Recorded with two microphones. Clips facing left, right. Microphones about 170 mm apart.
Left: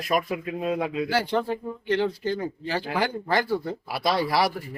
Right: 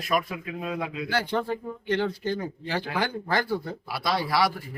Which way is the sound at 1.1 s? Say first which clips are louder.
Right 1 dB; 10° left (ahead or behind).